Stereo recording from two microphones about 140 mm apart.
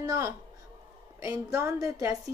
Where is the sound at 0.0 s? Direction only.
25° right (ahead or behind).